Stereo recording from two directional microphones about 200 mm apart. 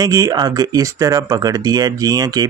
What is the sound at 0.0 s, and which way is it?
Speech, 20° right (ahead or behind).